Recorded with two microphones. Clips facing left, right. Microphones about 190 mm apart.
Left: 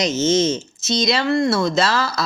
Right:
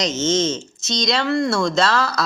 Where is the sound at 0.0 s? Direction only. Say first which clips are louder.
Left 2 dB; 10° left (ahead or behind).